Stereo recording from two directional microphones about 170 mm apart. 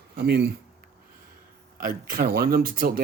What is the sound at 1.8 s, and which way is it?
Speech, 55° right (ahead or behind).